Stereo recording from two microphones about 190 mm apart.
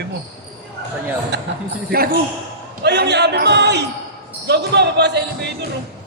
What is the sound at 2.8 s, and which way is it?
Speech, 60° right (ahead or behind).